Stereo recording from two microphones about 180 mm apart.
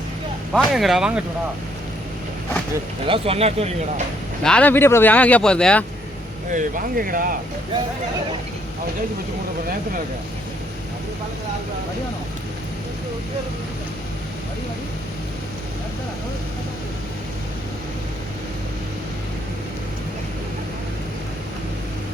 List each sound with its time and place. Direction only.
0.5 s speech: centre (ahead or behind)
3.1 s speech: 35° right (ahead or behind)
4.4 s speech: 5° left (ahead or behind)
6.5 s speech: 50° right (ahead or behind)